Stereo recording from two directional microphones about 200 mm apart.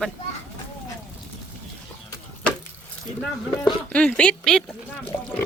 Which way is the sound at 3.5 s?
5° left (ahead or behind).